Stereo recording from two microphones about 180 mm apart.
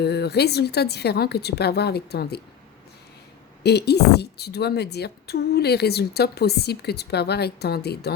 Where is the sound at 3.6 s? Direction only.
65° left (ahead or behind).